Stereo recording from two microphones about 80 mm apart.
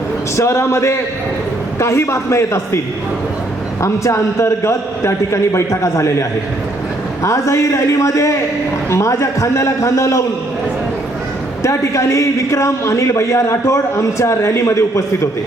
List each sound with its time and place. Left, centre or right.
0.3 s a man's voice: left
11.6 s a man's voice: left